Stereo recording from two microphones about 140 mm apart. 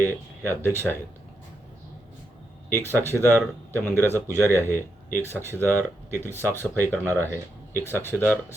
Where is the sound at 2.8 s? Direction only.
15° left (ahead or behind).